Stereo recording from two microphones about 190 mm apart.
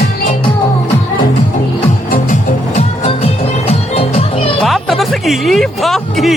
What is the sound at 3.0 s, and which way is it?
Music, 30° left (ahead or behind).